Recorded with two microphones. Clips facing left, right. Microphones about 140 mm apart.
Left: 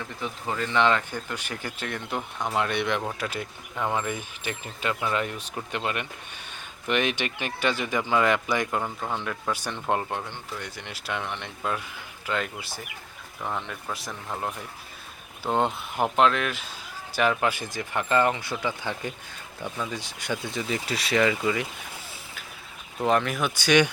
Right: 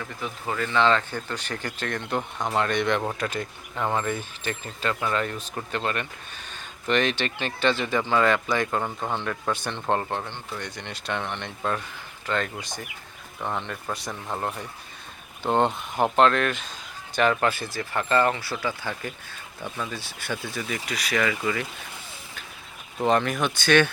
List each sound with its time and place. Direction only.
0.5 s speech: 15° left (ahead or behind)
8.8 s speech: 20° right (ahead or behind)
9.1 s speech: 5° left (ahead or behind)
15.4 s speech: centre (ahead or behind); by 21.7 s 20° left (ahead or behind)
23.0 s speech: centre (ahead or behind)